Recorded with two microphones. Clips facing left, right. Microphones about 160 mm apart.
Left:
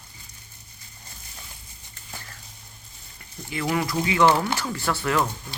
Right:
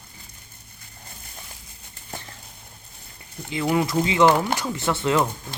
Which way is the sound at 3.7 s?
20° right (ahead or behind).